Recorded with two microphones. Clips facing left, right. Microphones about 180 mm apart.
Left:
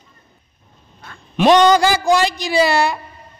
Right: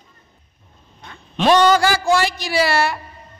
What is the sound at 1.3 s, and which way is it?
A man's voice, 15° left (ahead or behind).